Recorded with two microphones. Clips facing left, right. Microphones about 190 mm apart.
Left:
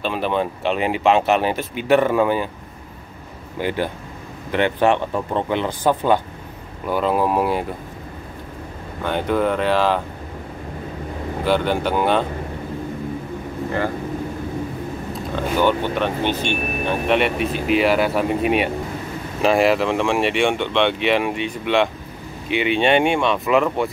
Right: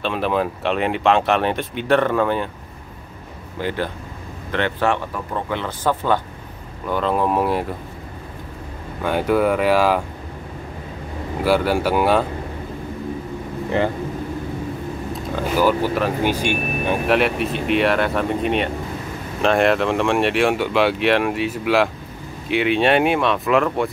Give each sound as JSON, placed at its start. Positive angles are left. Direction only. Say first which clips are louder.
{"t": 0.0, "sound": "speech", "louder": "right 1 dB", "side_deg": 0}
{"t": 3.6, "sound": "speech", "louder": "left 1 dB", "side_deg": 15}
{"t": 9.0, "sound": "speech", "louder": "right 2 dB", "side_deg": -5}
{"t": 11.4, "sound": "speech", "louder": "right 2 dB", "side_deg": -5}
{"t": 15.3, "sound": "speech", "louder": "even", "side_deg": -5}
{"t": 17.1, "sound": "speech", "louder": "even", "side_deg": 0}